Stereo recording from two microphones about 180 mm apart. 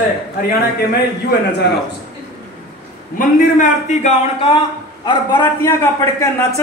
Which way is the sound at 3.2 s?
45° left (ahead or behind).